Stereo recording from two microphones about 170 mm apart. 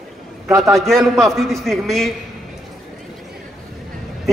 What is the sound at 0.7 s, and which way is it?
A man's voice, centre (ahead or behind).